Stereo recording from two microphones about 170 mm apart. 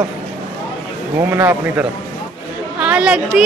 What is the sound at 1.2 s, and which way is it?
A woman's voice, 15° right (ahead or behind).